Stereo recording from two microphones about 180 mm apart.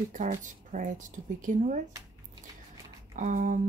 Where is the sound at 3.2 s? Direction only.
45° right (ahead or behind).